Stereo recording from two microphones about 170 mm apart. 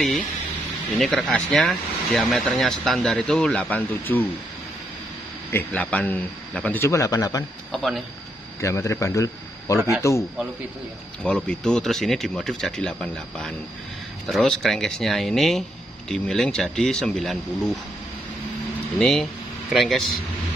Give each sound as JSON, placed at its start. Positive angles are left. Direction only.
{"t": 0.9, "sound": "speech", "side_deg": 0}
{"t": 5.5, "sound": "speech", "side_deg": 10}
{"t": 7.7, "sound": "speech", "side_deg": 0}
{"t": 8.5, "sound": "a man's voice", "side_deg": 15}
{"t": 9.8, "sound": "a man's voice", "side_deg": -15}
{"t": 11.2, "sound": "speech", "side_deg": 5}
{"t": 18.9, "sound": "speech", "side_deg": 0}